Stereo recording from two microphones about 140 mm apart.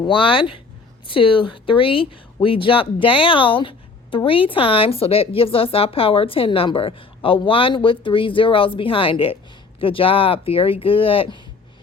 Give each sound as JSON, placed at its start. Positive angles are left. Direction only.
{"t": 0.0, "sound": "speech", "side_deg": 40}